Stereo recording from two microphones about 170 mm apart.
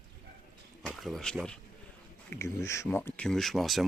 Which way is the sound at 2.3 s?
15° left (ahead or behind).